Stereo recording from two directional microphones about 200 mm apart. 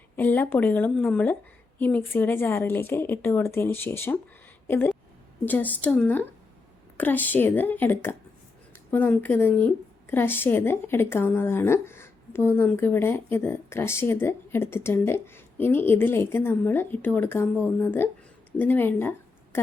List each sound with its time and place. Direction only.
0.2 s speech: 10° left (ahead or behind)